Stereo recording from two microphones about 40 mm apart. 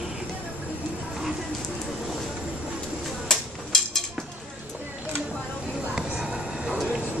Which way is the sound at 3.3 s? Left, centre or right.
Centre.